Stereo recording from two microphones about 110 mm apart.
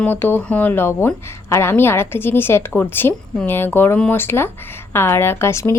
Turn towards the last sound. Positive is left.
turn(degrees=25)  # may be behind; listen again after turning